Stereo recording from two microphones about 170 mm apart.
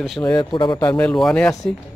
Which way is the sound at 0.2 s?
25° left (ahead or behind).